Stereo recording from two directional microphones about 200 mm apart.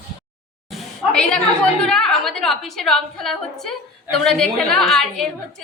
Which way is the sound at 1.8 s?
5° left (ahead or behind).